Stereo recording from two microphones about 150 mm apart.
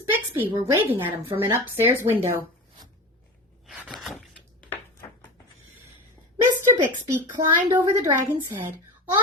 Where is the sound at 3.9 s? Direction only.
Centre (ahead or behind).